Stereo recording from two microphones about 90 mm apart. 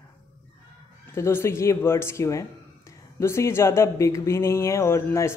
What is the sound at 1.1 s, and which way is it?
Speech, 30° left (ahead or behind).